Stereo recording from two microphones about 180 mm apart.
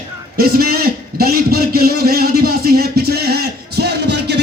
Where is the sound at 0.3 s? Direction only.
60° right (ahead or behind).